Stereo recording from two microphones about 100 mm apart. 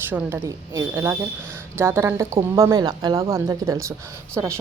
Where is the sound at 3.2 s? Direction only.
30° right (ahead or behind).